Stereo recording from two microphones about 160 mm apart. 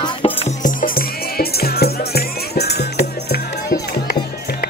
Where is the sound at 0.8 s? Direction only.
70° left (ahead or behind).